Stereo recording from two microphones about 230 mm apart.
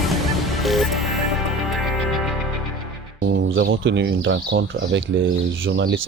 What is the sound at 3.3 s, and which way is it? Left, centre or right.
Speech, right.